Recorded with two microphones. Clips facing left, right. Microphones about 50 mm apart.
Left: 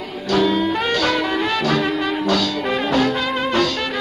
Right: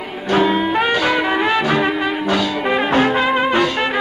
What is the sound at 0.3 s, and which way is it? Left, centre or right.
Brass instrument, right.